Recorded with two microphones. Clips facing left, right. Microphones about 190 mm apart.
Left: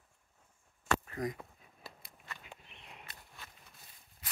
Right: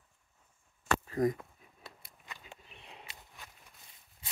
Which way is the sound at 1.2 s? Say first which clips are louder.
Right 8 dB; 50° right (ahead or behind).